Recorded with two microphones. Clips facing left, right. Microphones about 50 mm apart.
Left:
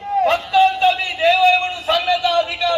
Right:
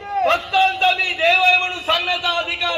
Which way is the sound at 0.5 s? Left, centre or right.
Right.